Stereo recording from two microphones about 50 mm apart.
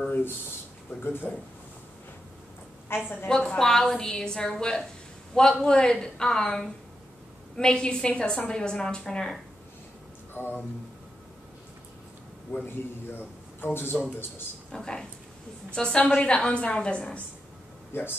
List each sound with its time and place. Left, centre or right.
1.0 s speech: left
2.9 s a man's voice: left
3.3 s a woman's voice: centre
10.4 s a man's voice: left
12.6 s a man's voice: left
14.7 s a woman's voice: centre
17.9 s a man's voice: left